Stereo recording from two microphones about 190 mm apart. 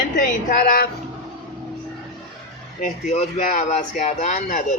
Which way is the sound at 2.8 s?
35° left (ahead or behind).